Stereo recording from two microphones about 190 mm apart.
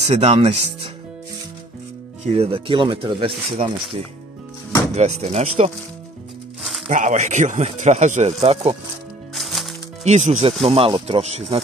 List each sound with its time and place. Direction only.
0.0 s speech: 35° right (ahead or behind)
2.3 s speech: 30° right (ahead or behind)
4.9 s speech: 35° right (ahead or behind)
6.9 s speech: 40° right (ahead or behind)
9.3 s music: centre (ahead or behind)
10.0 s speech: 35° right (ahead or behind)